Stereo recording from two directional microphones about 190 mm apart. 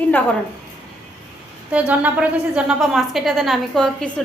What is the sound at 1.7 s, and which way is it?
A woman's voice, 5° right (ahead or behind).